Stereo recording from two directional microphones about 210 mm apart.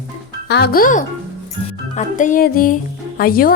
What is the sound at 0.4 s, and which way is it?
Speech, 50° left (ahead or behind).